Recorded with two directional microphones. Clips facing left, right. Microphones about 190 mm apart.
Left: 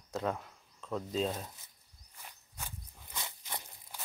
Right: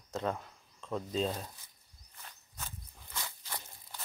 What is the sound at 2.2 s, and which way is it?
Walk, 15° left (ahead or behind).